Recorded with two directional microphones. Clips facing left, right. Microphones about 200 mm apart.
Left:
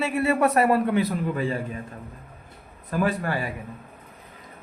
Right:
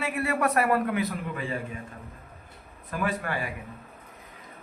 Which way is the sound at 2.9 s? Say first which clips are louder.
Left 5 dB; 35° left (ahead or behind).